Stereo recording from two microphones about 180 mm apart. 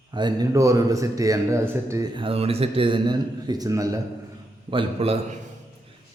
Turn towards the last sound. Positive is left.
turn(degrees=-30)  # may be behind; listen again after turning